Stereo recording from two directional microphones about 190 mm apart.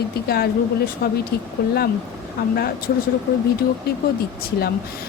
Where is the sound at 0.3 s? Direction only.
55° left (ahead or behind).